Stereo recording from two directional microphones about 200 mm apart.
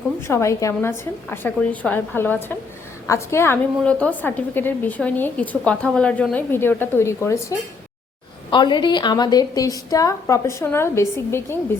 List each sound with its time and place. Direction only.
0.2 s a woman's voice: 15° left (ahead or behind)
8.4 s a woman's voice: 25° left (ahead or behind)